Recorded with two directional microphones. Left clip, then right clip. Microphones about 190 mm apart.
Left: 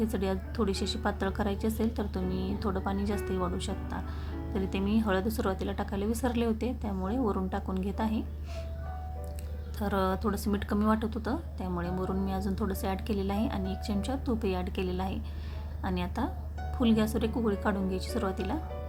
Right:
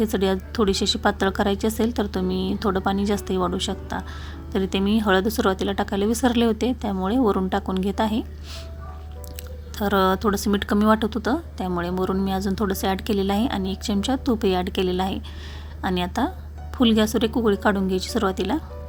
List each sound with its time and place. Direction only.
0.0 s speech: 25° right (ahead or behind)
9.7 s speech: 25° right (ahead or behind)